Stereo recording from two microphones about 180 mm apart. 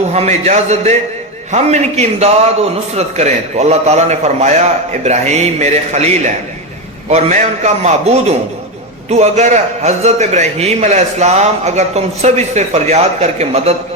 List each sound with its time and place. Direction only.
0.1 s a man's voice: 40° right (ahead or behind)